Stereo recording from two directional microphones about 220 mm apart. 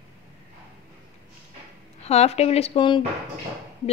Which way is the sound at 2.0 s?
30° left (ahead or behind).